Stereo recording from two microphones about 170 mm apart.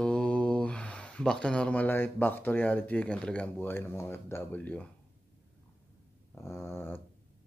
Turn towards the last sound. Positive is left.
turn(degrees=15)  # may be behind; listen again after turning